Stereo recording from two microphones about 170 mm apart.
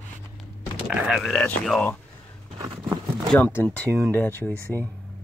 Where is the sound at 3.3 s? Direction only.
10° left (ahead or behind).